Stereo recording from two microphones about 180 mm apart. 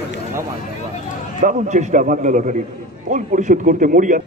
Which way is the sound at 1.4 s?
40° right (ahead or behind).